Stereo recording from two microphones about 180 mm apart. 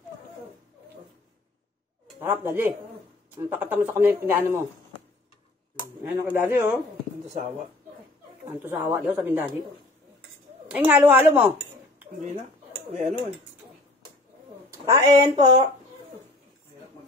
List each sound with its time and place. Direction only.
2.1 s speech: 10° right (ahead or behind)
6.0 s speech: 10° right (ahead or behind)
8.6 s speech: 10° right (ahead or behind)
10.7 s speech: 10° right (ahead or behind)
14.7 s speech: 20° right (ahead or behind)